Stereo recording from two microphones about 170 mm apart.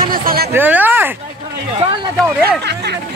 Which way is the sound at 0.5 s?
10° right (ahead or behind).